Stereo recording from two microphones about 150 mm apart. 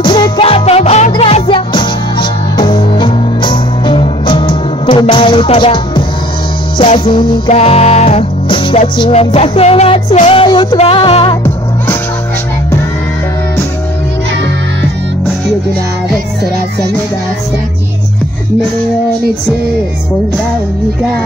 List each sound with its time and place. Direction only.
0.0 s music: 30° left (ahead or behind)